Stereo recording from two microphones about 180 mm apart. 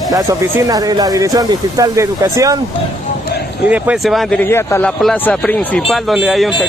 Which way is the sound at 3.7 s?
5° right (ahead or behind).